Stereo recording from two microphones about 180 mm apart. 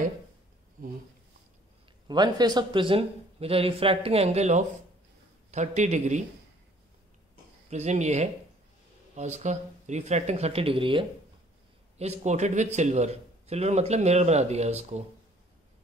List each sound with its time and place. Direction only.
0.8 s speech: 50° right (ahead or behind)
2.0 s speech: 25° right (ahead or behind); by 6.2 s 40° right (ahead or behind)
7.7 s speech: 40° right (ahead or behind)